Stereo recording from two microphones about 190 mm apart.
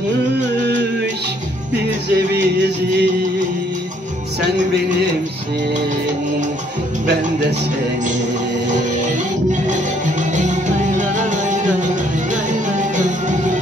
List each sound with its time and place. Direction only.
2.1 s music: 60° right (ahead or behind)
9.5 s music: 40° right (ahead or behind)
12.7 s music: 40° right (ahead or behind)